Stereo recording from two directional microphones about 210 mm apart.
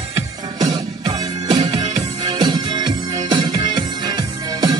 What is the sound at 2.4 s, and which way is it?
Music, 20° right (ahead or behind).